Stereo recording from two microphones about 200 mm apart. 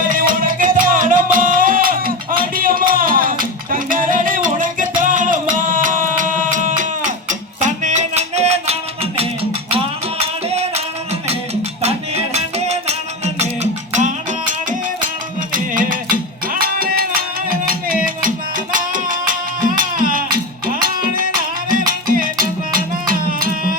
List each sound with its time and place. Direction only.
0.0 s music: 45° right (ahead or behind)